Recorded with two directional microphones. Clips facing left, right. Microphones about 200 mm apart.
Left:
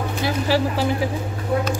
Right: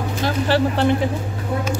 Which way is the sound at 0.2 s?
5° left (ahead or behind).